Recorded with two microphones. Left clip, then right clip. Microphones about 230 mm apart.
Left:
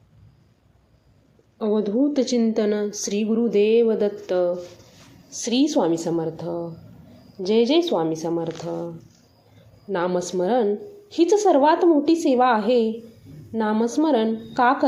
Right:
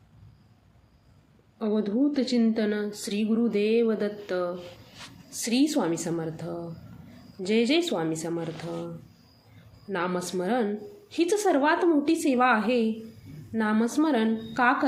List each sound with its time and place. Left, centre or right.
1.5 s a woman's voice: centre
9.9 s a woman's voice: centre